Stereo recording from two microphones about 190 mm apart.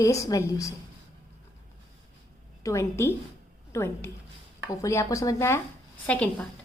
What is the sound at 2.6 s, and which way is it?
A woman's voice, 15° left (ahead or behind).